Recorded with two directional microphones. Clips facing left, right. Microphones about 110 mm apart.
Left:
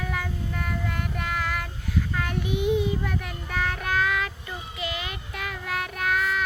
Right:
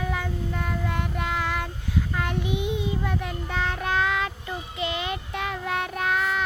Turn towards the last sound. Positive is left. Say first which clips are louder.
# right 1 dB
turn(degrees=-25)  # may be behind; listen again after turning